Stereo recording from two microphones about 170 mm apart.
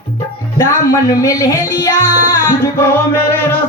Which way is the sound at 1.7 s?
15° left (ahead or behind).